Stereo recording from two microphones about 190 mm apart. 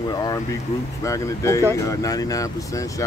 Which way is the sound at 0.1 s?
20° left (ahead or behind).